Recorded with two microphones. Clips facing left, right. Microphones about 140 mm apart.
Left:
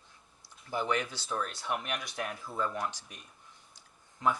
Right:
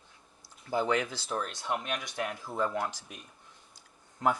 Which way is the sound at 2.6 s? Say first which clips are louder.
Right 3 dB; 30° right (ahead or behind).